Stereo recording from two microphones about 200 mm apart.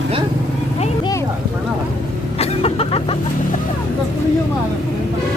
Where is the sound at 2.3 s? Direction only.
30° left (ahead or behind).